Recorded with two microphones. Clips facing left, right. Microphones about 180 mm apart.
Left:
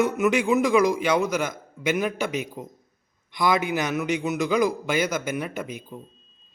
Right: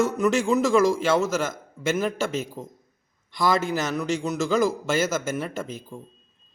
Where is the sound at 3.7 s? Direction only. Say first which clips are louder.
Left 1 dB; 15° left (ahead or behind).